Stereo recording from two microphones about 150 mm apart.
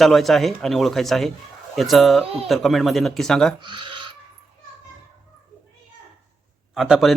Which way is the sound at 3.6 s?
35° right (ahead or behind).